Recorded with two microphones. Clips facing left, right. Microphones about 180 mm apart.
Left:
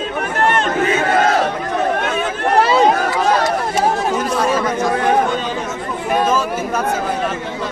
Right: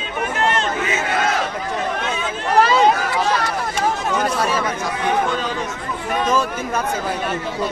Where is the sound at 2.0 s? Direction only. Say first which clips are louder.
Left 5 dB; 55° left (ahead or behind).